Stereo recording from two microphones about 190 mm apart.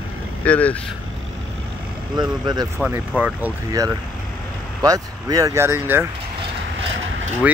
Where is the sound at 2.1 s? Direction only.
20° right (ahead or behind).